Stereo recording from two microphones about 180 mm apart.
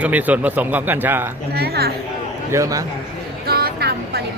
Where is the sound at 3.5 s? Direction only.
60° right (ahead or behind).